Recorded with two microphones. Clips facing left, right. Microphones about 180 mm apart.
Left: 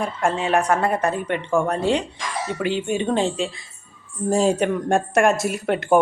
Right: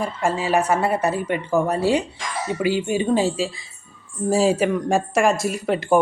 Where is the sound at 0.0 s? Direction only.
Centre (ahead or behind).